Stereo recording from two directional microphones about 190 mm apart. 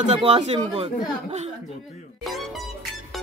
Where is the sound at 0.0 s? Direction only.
35° right (ahead or behind).